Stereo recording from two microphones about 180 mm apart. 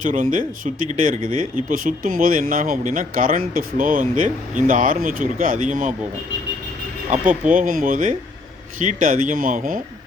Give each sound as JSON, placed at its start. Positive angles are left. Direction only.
{"t": 0.0, "sound": "speech", "side_deg": -45}
{"t": 7.1, "sound": "speech", "side_deg": -45}